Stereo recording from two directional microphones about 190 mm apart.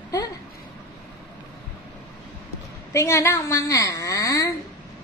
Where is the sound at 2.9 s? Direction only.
15° left (ahead or behind).